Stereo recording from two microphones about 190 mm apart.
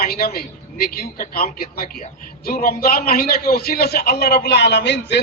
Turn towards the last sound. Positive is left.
turn(degrees=65)  # may be behind; listen again after turning